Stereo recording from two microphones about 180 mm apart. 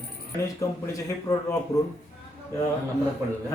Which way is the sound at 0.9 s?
20° left (ahead or behind).